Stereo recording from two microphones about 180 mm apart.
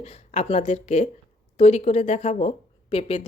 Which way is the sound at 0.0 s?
35° left (ahead or behind).